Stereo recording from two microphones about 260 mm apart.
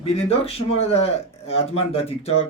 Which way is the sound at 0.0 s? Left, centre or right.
Left.